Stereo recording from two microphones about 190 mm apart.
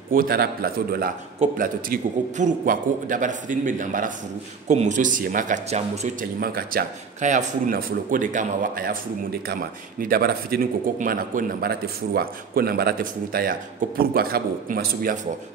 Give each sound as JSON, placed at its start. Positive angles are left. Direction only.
{"t": 0.1, "sound": "speech", "side_deg": -50}
{"t": 6.4, "sound": "speech", "side_deg": -50}